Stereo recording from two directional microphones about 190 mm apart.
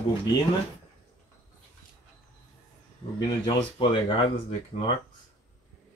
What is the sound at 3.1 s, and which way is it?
Speech, 25° left (ahead or behind).